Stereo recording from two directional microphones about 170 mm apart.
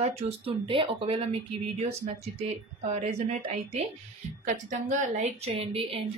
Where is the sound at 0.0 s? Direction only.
35° right (ahead or behind).